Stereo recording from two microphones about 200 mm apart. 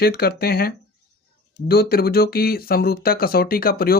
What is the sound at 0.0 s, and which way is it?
Speech, 50° left (ahead or behind).